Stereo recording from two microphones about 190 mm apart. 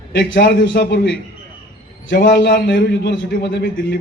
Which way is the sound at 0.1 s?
65° left (ahead or behind).